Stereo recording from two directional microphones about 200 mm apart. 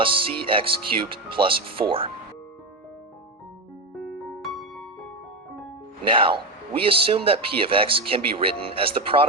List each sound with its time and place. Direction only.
0.0 s speech: 25° right (ahead or behind)
4.0 s music: centre (ahead or behind)
6.1 s speech: 25° right (ahead or behind)